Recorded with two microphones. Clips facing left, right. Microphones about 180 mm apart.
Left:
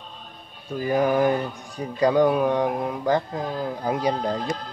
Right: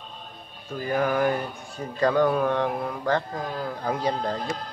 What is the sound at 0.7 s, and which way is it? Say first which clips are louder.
Speech: left 3 dB; 20° left (ahead or behind).